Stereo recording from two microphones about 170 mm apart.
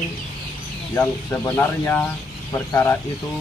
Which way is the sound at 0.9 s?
10° left (ahead or behind).